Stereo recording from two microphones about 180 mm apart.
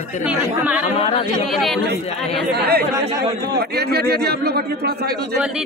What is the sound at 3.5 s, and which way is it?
A man's voice, 65° right (ahead or behind).